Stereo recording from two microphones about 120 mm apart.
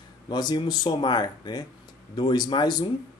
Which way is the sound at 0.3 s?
35° left (ahead or behind).